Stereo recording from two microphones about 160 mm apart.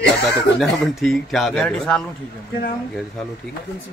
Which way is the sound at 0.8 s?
Centre (ahead or behind).